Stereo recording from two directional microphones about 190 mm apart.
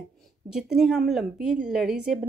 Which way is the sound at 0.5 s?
5° right (ahead or behind).